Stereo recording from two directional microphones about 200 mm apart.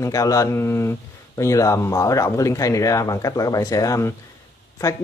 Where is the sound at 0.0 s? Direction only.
15° left (ahead or behind).